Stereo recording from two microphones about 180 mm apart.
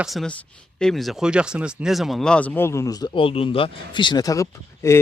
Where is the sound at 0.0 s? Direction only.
Centre (ahead or behind).